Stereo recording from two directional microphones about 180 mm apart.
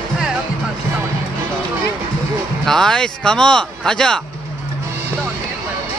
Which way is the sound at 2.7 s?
5° left (ahead or behind).